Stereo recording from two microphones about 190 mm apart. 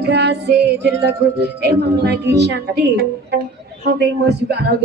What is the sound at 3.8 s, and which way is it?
Music, 60° right (ahead or behind).